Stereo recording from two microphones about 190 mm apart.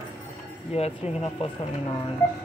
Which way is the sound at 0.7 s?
30° left (ahead or behind).